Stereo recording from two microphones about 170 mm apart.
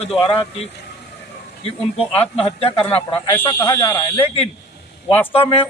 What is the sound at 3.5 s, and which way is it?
Speech, 15° left (ahead or behind).